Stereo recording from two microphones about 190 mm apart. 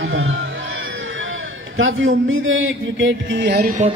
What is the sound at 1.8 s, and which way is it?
Speech, 90° right.